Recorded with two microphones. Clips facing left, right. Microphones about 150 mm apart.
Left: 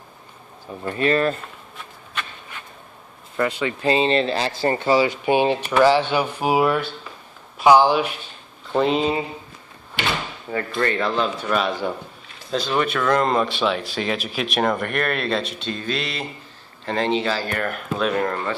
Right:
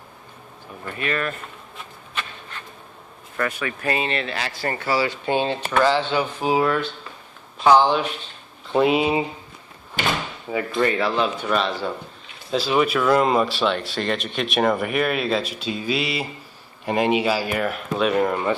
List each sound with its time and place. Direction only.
0.9 s speech: 30° left (ahead or behind)
3.3 s speech: 20° left (ahead or behind)
8.7 s speech: 10° right (ahead or behind)
10.5 s speech: 10° right (ahead or behind)